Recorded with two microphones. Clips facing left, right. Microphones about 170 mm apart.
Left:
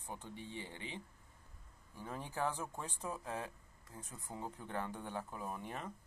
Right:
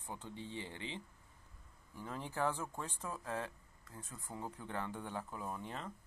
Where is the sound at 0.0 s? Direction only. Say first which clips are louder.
Right 1 dB; 15° left (ahead or behind).